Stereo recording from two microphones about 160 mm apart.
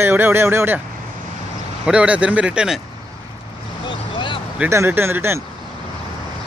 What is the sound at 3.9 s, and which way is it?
Vehicle, 30° left (ahead or behind).